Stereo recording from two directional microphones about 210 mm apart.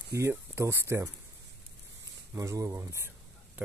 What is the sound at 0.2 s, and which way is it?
Speech, 10° right (ahead or behind).